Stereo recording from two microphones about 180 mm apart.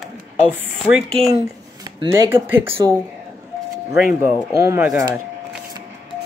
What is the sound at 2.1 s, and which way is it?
Speech, 15° right (ahead or behind).